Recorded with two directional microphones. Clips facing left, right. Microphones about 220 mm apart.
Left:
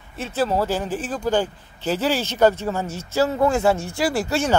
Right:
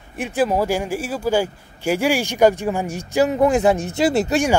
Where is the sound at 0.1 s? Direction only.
15° right (ahead or behind).